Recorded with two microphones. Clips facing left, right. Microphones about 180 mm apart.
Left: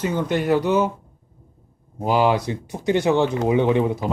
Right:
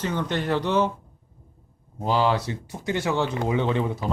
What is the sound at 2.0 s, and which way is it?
Speech, 15° left (ahead or behind).